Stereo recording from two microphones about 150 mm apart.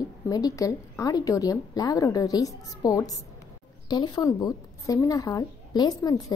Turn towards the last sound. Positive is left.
turn(degrees=25)  # may be behind; listen again after turning